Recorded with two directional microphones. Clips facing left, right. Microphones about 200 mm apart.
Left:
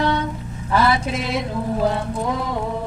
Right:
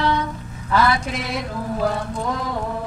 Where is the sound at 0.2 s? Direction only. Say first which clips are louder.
Left 2 dB; 25° left (ahead or behind).